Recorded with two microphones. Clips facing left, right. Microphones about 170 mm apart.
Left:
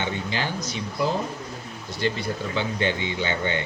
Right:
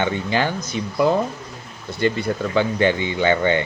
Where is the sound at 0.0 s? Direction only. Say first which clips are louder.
Right 7 dB; 55° right (ahead or behind).